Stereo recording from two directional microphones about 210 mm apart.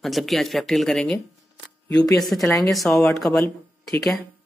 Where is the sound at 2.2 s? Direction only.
Centre (ahead or behind).